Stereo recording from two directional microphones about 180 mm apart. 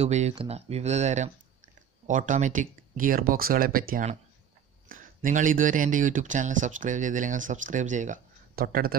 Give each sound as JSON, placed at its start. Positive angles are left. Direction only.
{"t": 0.0, "sound": "speech", "side_deg": -35}